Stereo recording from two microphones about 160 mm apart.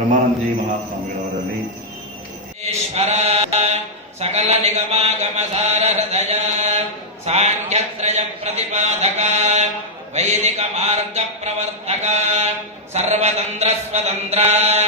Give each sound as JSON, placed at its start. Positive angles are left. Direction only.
{"t": 2.6, "sound": "mantra", "side_deg": -40}
{"t": 10.1, "sound": "a man's voice", "side_deg": -45}